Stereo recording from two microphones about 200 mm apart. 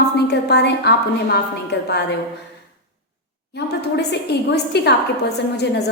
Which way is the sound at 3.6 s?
55° left (ahead or behind).